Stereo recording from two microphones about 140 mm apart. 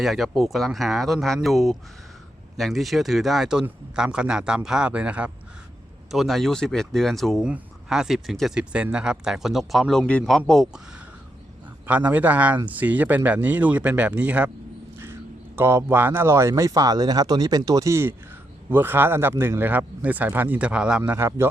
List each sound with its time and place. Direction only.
0.0 s speech: centre (ahead or behind)
21.1 s speech: 15° right (ahead or behind)